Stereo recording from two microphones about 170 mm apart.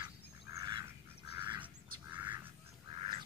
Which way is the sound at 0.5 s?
25° right (ahead or behind).